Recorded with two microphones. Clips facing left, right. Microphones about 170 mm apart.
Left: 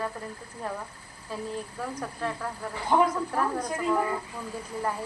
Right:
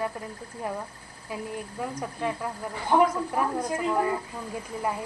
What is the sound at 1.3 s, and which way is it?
A woman's voice, 15° right (ahead or behind).